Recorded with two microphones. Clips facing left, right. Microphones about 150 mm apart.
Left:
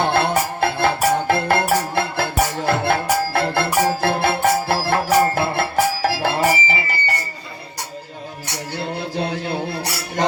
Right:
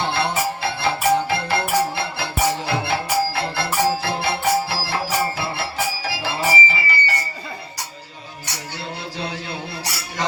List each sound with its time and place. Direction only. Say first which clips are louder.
0.0 s music: left 4 dB; 50° left (ahead or behind)
8.8 s music: left 6 dB; 55° left (ahead or behind)